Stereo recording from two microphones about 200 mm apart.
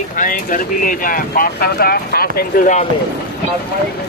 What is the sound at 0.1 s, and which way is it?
Speech, 40° left (ahead or behind).